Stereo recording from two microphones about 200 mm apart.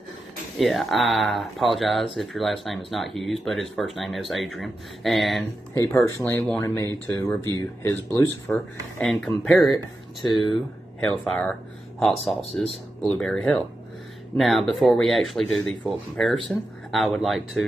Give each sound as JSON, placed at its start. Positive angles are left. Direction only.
{"t": 0.6, "sound": "speech", "side_deg": 0}
{"t": 10.2, "sound": "speech", "side_deg": 25}
{"t": 11.0, "sound": "speech", "side_deg": 5}